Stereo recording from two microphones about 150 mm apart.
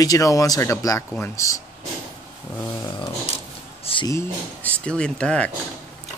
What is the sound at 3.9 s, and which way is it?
Speech, 40° left (ahead or behind).